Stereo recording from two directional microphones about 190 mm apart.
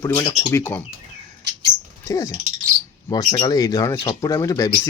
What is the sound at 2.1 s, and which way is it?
Speech, 15° left (ahead or behind).